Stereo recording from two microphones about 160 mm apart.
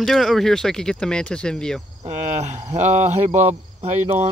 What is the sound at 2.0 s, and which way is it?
Speech, 45° right (ahead or behind).